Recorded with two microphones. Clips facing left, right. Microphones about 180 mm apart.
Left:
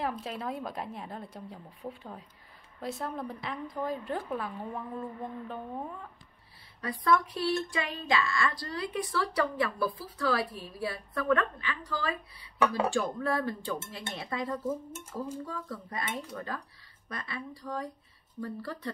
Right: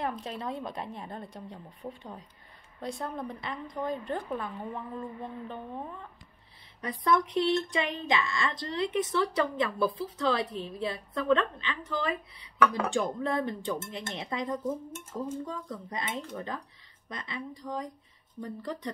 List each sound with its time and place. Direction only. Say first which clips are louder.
0.0 s a woman's voice: even; 5° left (ahead or behind)
6.8 s speech: even; 20° right (ahead or behind)
12.5 s speech: right 1 dB; 20° left (ahead or behind)
13.2 s speech: right 1 dB; 20° right (ahead or behind)